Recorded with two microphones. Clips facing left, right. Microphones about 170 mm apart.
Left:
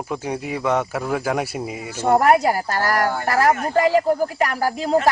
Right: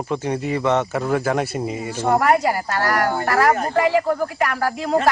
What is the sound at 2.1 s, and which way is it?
Speech, 40° left (ahead or behind).